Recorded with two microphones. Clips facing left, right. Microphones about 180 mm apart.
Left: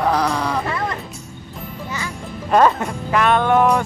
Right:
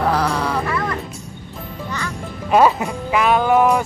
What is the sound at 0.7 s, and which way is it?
Music, 25° left (ahead or behind).